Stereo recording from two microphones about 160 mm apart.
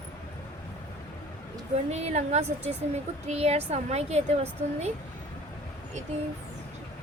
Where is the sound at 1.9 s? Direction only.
45° right (ahead or behind).